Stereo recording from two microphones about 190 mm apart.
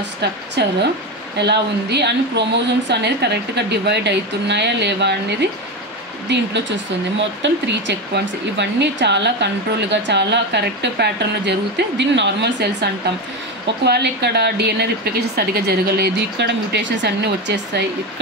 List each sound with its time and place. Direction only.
0.6 s speech: 60° right (ahead or behind)
13.8 s speech: 60° right (ahead or behind)